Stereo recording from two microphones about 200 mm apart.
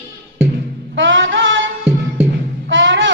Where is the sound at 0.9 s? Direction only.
70° right (ahead or behind).